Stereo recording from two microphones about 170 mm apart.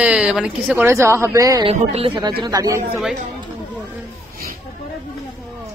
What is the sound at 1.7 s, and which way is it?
Speech, 35° right (ahead or behind).